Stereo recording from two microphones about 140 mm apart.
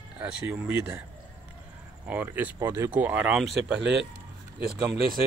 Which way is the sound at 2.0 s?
10° right (ahead or behind).